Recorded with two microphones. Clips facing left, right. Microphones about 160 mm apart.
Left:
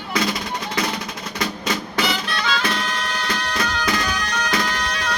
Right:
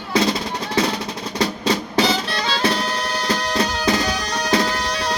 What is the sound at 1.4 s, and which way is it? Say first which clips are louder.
Music: right 5 dB; 30° right (ahead or behind).